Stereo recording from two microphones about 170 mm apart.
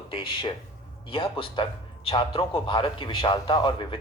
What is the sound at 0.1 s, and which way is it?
A man's voice, 30° left (ahead or behind).